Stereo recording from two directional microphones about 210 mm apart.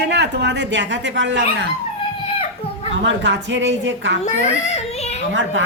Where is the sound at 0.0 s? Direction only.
55° right (ahead or behind).